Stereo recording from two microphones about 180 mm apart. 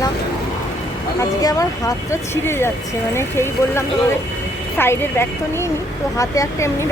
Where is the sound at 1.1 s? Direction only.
20° left (ahead or behind).